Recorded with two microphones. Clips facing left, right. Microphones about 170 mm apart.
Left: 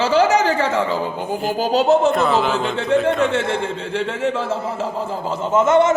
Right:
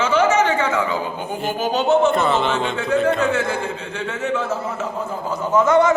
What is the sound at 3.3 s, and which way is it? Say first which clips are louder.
A man's voice: left 1 dB; 25° left (ahead or behind).